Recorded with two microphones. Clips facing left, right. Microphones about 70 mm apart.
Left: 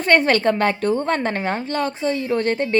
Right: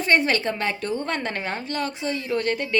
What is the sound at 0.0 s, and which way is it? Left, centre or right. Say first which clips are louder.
A woman's voice: left 5 dB; left.